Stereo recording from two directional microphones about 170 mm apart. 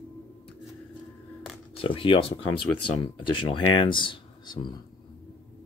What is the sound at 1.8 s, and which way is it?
Speech, 30° left (ahead or behind).